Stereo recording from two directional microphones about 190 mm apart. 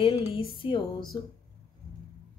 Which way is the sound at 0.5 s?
25° left (ahead or behind).